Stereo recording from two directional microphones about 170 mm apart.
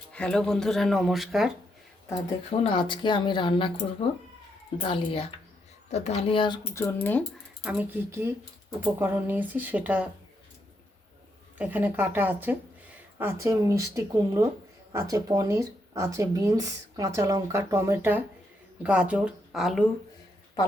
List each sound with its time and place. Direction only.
0.1 s speech: 5° left (ahead or behind)
2.5 s speech: 30° left (ahead or behind)
4.8 s speech: 30° left (ahead or behind)
6.7 s speech: 15° left (ahead or behind)
7.6 s speech: 10° right (ahead or behind)
11.5 s speech: 10° right (ahead or behind)